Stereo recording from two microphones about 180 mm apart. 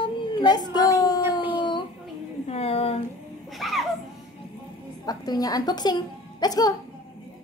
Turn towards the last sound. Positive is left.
turn(degrees=20)  # may be behind; listen again after turning